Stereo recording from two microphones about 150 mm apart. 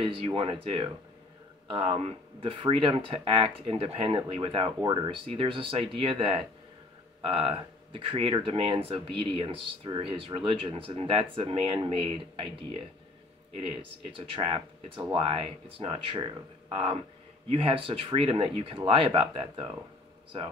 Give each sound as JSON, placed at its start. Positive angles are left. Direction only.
{"t": 0.0, "sound": "speech", "side_deg": -35}
{"t": 1.9, "sound": "speech", "side_deg": -40}